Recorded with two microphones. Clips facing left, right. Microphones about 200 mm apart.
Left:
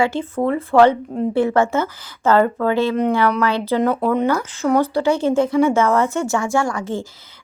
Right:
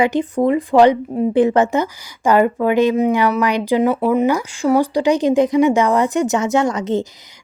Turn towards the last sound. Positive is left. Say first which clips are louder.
# right 4 dB
turn(degrees=-20)  # may be behind; listen again after turning